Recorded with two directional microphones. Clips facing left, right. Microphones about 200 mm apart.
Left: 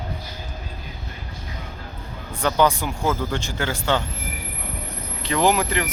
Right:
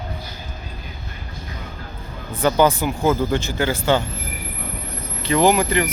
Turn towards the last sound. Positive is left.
turn(degrees=0)  # may be behind; listen again after turning